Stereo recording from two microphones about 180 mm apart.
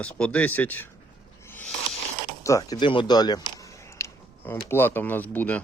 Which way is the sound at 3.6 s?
15° left (ahead or behind).